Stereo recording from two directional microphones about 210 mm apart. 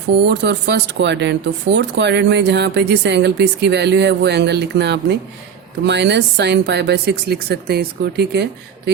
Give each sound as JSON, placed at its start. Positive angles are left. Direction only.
{"t": 0.3, "sound": "a woman's voice", "side_deg": -55}